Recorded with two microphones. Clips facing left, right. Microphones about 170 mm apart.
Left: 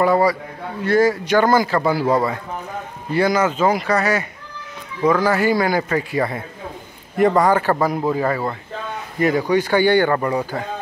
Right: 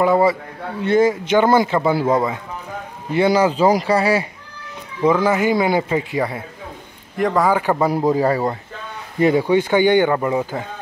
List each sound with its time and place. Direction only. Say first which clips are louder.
0.0 s speech: right 1 dB; 20° right (ahead or behind)
5.2 s speech: right 1 dB; 20° right (ahead or behind)
7.2 s a man's voice: left 2 dB; centre (ahead or behind)
8.1 s speech: right 3 dB; 35° right (ahead or behind); by 10.1 s 20° right (ahead or behind)
10.1 s a man's voice: right 1 dB; 5° right (ahead or behind)